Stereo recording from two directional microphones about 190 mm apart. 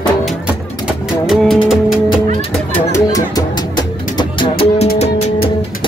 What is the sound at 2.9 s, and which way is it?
Music, 20° left (ahead or behind).